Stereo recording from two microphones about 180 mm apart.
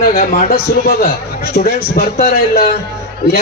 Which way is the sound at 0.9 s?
55° left (ahead or behind).